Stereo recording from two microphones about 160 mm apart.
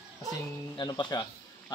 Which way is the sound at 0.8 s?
25° left (ahead or behind).